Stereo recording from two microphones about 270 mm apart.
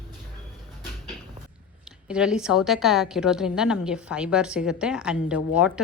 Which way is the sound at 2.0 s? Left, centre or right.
Centre.